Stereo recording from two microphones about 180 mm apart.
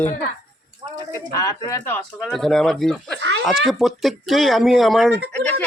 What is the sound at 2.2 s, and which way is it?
Speech, centre (ahead or behind).